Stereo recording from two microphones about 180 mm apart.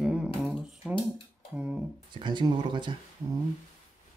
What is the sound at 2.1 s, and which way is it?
Speech, 25° right (ahead or behind).